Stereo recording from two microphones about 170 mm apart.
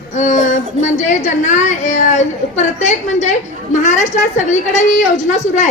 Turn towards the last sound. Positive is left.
turn(degrees=45)  # may be behind; listen again after turning